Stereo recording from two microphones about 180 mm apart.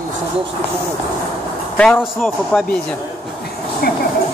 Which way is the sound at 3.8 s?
60° left (ahead or behind).